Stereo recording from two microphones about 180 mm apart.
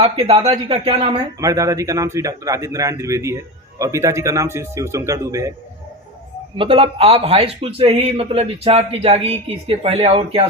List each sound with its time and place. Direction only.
0.0 s a man's voice: 35° right (ahead or behind)
1.4 s a man's voice: 20° right (ahead or behind)
6.6 s a man's voice: 30° right (ahead or behind)